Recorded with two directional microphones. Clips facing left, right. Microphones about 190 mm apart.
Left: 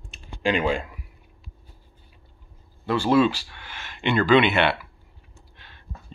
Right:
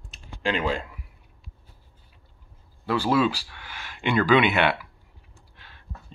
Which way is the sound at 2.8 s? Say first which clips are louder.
Left 3 dB; 5° right (ahead or behind).